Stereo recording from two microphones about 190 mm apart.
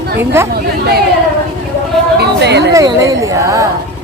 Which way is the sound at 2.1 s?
60° right (ahead or behind).